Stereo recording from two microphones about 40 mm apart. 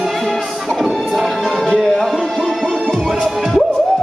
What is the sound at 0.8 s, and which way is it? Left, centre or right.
Music, centre.